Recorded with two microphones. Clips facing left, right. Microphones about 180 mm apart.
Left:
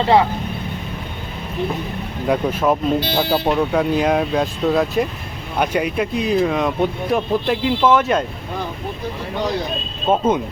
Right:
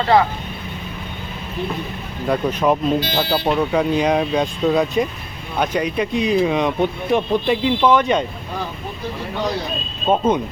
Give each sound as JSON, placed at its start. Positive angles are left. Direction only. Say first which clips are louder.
{"t": 0.0, "sound": "speech", "louder": "left 1 dB", "side_deg": 25}
{"t": 2.2, "sound": "speech", "louder": "even", "side_deg": 5}
{"t": 10.1, "sound": "speech", "louder": "even", "side_deg": 5}